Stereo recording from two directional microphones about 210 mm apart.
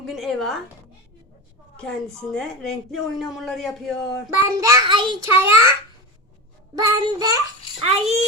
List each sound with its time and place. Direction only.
0.0 s speech: centre (ahead or behind)
1.7 s speech: 5° left (ahead or behind)
4.4 s child singing: 15° right (ahead or behind)
5.4 s a child's voice: 10° right (ahead or behind)
6.7 s child singing: 20° right (ahead or behind)
7.8 s a child's voice: 30° right (ahead or behind)